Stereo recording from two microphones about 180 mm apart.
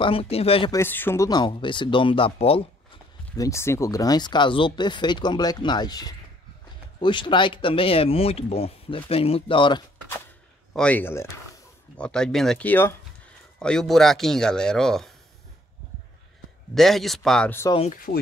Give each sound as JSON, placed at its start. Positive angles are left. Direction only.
{"t": 0.0, "sound": "speech", "side_deg": 30}
{"t": 0.7, "sound": "speech", "side_deg": 15}
{"t": 3.3, "sound": "speech", "side_deg": 15}
{"t": 10.7, "sound": "speech", "side_deg": 5}
{"t": 16.7, "sound": "speech", "side_deg": 0}
{"t": 17.6, "sound": "speech", "side_deg": 30}
{"t": 17.9, "sound": "speech", "side_deg": 55}